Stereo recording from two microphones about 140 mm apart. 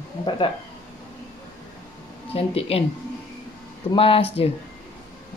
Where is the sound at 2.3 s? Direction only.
45° left (ahead or behind).